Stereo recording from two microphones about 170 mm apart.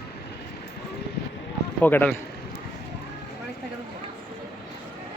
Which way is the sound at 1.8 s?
10° left (ahead or behind).